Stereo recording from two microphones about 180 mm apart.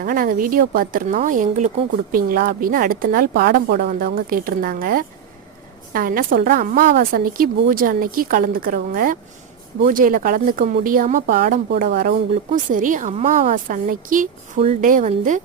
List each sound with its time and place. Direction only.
0.0 s a woman's voice: 50° right (ahead or behind)
12.3 s a woman's voice: 40° right (ahead or behind)